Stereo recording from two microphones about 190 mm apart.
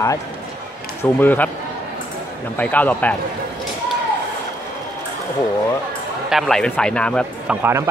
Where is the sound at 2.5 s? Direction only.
10° left (ahead or behind).